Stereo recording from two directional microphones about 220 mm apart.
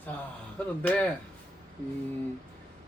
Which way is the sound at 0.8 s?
5° left (ahead or behind).